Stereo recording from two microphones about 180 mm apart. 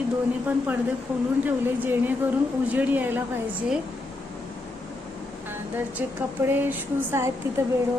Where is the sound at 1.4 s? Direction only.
10° right (ahead or behind).